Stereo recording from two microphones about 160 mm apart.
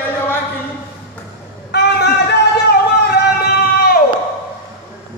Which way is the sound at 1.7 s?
90° left.